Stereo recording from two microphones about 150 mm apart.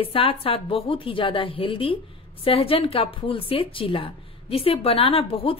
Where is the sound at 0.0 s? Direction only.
35° left (ahead or behind).